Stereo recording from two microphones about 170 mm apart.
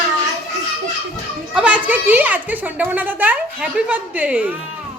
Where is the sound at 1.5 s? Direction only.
5° right (ahead or behind).